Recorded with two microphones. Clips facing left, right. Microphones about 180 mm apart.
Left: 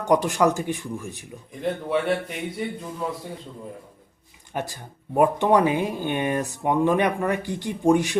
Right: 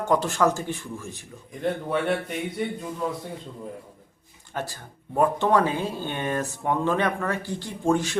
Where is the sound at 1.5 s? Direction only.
Centre (ahead or behind).